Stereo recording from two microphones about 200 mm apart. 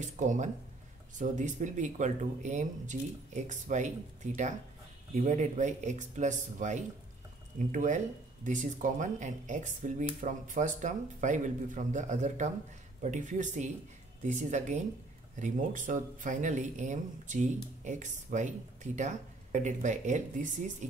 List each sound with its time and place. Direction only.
0.0 s speech: 40° right (ahead or behind)
15.3 s speech: 40° right (ahead or behind)